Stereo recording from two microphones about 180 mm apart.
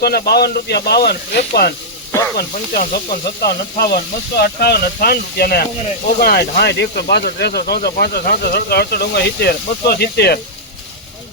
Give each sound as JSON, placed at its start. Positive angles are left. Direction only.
{"t": 0.0, "sound": "speech", "side_deg": 60}
{"t": 2.1, "sound": "speech", "side_deg": 15}
{"t": 2.7, "sound": "speech", "side_deg": 55}